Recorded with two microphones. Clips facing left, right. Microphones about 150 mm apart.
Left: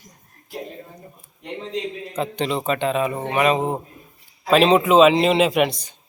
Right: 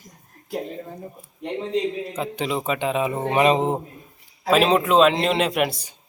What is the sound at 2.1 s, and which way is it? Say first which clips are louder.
Speech: left 2 dB; 5° right (ahead or behind).